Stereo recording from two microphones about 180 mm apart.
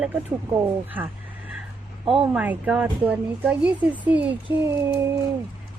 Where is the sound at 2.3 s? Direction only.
5° right (ahead or behind).